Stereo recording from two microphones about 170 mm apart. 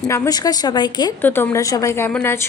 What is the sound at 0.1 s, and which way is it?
A woman's voice, 20° left (ahead or behind).